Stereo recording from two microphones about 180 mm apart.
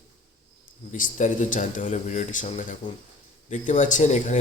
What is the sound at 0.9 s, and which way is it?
Speech, 45° left (ahead or behind).